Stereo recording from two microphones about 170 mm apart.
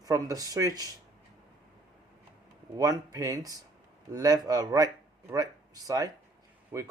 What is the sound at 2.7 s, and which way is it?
Speech, 20° right (ahead or behind).